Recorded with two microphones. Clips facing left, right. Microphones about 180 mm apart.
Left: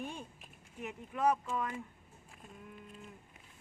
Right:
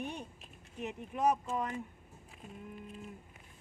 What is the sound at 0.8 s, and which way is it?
Speech, 20° right (ahead or behind).